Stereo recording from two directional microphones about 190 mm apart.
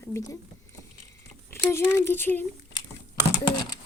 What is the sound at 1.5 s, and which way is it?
Speech, 10° left (ahead or behind).